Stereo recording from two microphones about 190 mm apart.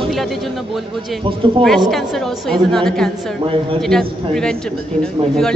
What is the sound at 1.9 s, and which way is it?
A man's voice, centre (ahead or behind).